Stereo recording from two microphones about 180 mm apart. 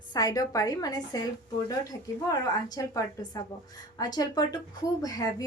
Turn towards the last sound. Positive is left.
turn(degrees=20)  # may be behind; listen again after turning